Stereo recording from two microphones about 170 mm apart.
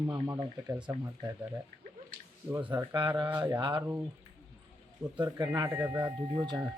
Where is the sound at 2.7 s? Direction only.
25° right (ahead or behind).